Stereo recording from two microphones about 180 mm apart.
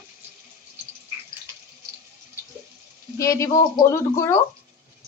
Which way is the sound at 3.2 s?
15° left (ahead or behind).